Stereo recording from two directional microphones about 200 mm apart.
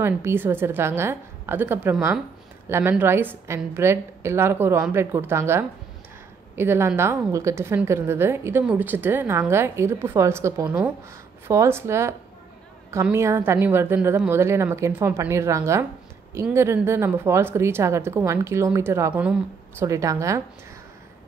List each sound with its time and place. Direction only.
0.0 s a woman's voice: 10° right (ahead or behind)